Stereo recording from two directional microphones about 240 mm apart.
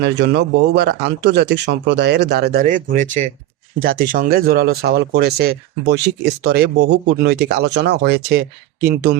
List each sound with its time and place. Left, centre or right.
0.0 s speech: right